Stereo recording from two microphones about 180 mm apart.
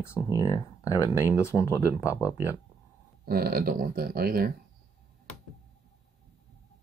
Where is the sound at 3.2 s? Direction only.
55° right (ahead or behind).